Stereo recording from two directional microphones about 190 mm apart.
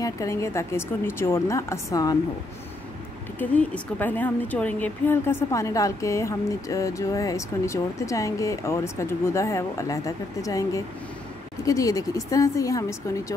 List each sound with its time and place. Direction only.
0.0 s a woman's voice: 15° left (ahead or behind)
3.3 s a woman's voice: 10° left (ahead or behind)